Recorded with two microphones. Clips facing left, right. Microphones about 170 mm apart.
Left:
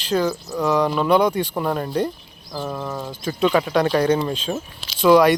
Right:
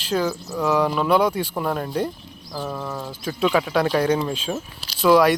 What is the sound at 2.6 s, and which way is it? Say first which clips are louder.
Speech: left 2 dB; 10° left (ahead or behind).